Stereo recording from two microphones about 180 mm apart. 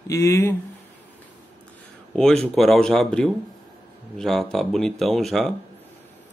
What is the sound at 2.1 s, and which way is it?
Speech, 5° left (ahead or behind).